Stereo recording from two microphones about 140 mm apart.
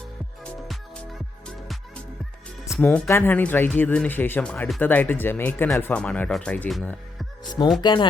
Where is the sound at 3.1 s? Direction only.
15° left (ahead or behind).